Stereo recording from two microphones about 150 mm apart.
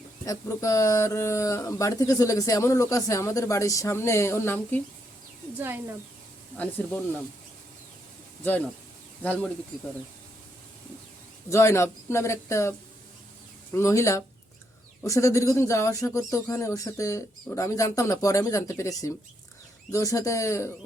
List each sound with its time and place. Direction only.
0.3 s speech: 20° left (ahead or behind)
5.5 s speech: 15° right (ahead or behind)
6.6 s speech: 10° left (ahead or behind)
11.4 s speech: 20° left (ahead or behind)
13.7 s speech: 20° left (ahead or behind)